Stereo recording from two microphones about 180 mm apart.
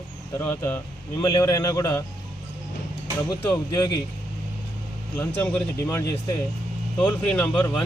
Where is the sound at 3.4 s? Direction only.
10° left (ahead or behind).